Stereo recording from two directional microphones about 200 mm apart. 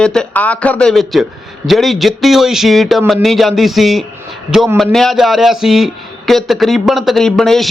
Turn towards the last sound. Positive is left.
turn(degrees=0)  # may be behind; listen again after turning